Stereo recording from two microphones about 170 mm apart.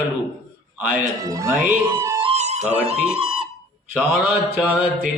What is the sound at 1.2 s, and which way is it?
Speech, 20° right (ahead or behind).